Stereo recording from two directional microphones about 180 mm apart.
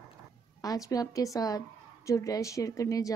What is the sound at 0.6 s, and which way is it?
Speech, 20° left (ahead or behind).